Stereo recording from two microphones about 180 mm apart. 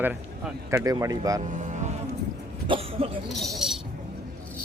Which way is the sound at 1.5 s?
45° right (ahead or behind).